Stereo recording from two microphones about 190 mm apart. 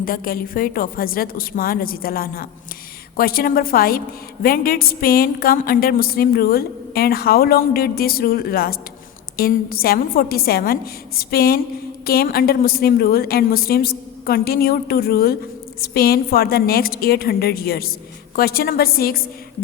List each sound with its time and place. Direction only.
0.0 s a woman's voice: 50° left (ahead or behind)